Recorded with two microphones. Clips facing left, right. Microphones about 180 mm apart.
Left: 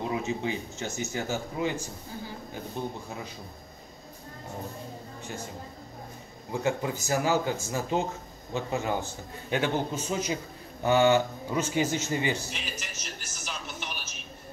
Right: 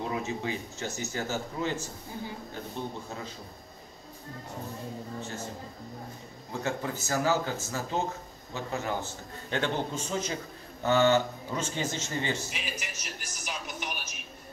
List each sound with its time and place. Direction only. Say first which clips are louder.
0.1 s a man's voice: left 2 dB; 20° left (ahead or behind)
6.6 s a man's voice: left 3 dB; 15° left (ahead or behind)
12.4 s television: even; 10° right (ahead or behind)